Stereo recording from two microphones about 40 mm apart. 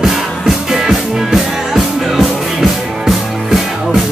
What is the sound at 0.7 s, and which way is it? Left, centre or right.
Music, centre.